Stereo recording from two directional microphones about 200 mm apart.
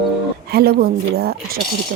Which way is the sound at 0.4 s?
50° right (ahead or behind).